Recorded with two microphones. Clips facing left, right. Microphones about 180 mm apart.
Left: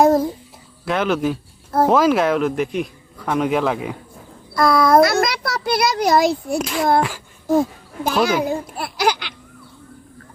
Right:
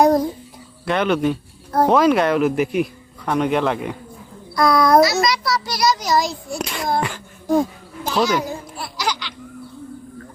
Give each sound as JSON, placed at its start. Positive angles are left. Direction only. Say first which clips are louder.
{"t": 0.0, "sound": "babbling", "louder": "left 1 dB", "side_deg": 5}
{"t": 0.9, "sound": "speech", "louder": "right 1 dB", "side_deg": 0}
{"t": 5.0, "sound": "a child's voice", "louder": "even", "side_deg": 55}
{"t": 6.6, "sound": "speech", "louder": "left 5 dB", "side_deg": 0}
{"t": 7.0, "sound": "a sound", "louder": "left 2 dB", "side_deg": 5}
{"t": 8.0, "sound": "a child's voice", "louder": "left 1 dB", "side_deg": 55}
{"t": 8.4, "sound": "a sound", "louder": "left 6 dB", "side_deg": 60}